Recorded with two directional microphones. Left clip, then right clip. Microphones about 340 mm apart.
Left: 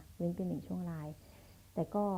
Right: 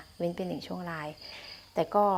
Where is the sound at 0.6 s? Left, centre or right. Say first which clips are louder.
Right 9 dB; centre.